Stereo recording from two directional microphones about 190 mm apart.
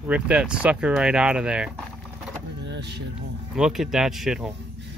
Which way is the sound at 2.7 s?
60° right (ahead or behind).